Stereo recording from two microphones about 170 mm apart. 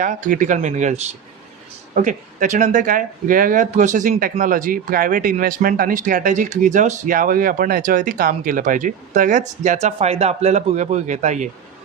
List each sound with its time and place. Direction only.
0.0 s speech: 45° right (ahead or behind)
2.0 s speech: 45° right (ahead or behind)